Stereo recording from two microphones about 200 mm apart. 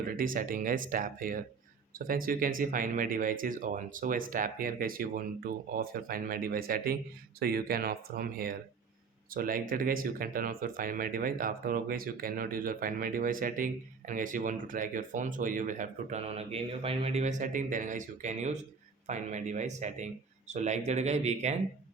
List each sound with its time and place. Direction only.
0.0 s speech: 45° right (ahead or behind)